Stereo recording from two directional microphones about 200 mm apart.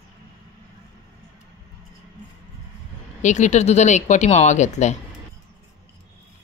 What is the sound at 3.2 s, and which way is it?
Speech, 35° left (ahead or behind).